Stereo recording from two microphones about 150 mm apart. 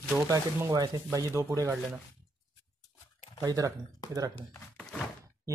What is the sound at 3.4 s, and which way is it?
Speech, 25° right (ahead or behind).